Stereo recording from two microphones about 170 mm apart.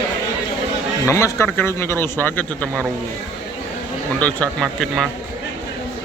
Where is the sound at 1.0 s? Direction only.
15° left (ahead or behind).